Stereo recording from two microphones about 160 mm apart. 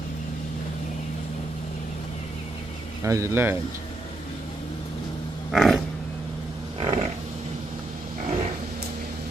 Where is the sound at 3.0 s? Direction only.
20° right (ahead or behind).